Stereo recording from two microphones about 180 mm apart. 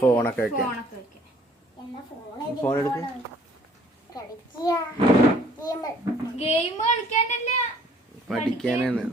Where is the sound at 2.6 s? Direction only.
15° left (ahead or behind).